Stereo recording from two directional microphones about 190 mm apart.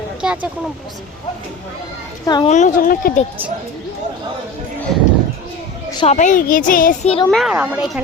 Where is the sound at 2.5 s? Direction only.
45° left (ahead or behind).